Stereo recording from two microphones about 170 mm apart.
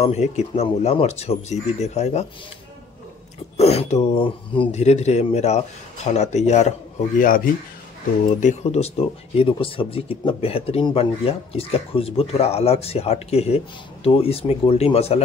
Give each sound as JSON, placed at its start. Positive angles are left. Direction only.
{"t": 0.0, "sound": "speech", "side_deg": 40}
{"t": 3.5, "sound": "speech", "side_deg": 35}
{"t": 7.2, "sound": "speech", "side_deg": 55}
{"t": 8.4, "sound": "speech", "side_deg": 40}